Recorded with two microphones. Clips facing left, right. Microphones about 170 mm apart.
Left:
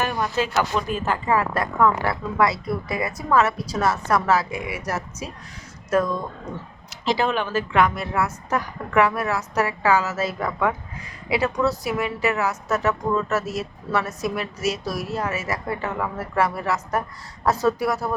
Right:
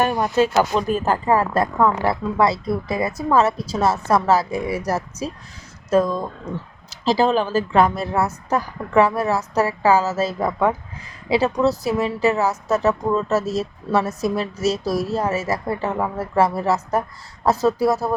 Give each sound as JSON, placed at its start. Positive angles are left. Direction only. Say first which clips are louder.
{"t": 0.0, "sound": "a woman's voice", "louder": "right 6 dB", "side_deg": -40}
{"t": 7.0, "sound": "a woman's voice", "louder": "right 5 dB", "side_deg": -35}